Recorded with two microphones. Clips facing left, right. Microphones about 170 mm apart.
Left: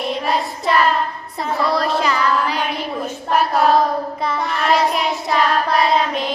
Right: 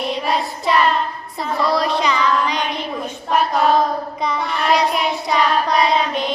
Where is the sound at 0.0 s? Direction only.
Centre (ahead or behind).